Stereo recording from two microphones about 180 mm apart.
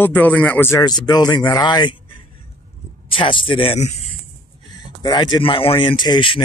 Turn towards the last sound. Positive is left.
turn(degrees=25)  # may be behind; listen again after turning